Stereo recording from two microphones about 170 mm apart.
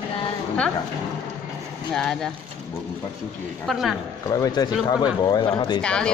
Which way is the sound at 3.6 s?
Centre (ahead or behind).